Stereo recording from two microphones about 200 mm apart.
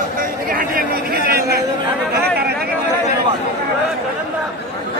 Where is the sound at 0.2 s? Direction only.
45° right (ahead or behind).